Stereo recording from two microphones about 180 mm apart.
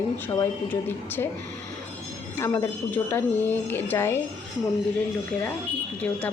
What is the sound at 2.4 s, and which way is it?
A woman's voice, 15° left (ahead or behind).